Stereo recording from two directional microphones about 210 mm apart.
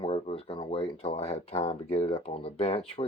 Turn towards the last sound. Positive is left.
turn(degrees=25)  # may be behind; listen again after turning